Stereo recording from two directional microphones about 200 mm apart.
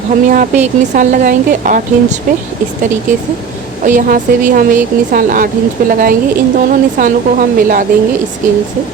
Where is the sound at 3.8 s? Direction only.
40° right (ahead or behind).